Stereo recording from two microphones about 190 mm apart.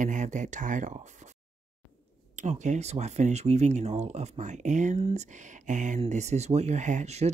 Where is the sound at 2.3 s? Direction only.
40° right (ahead or behind).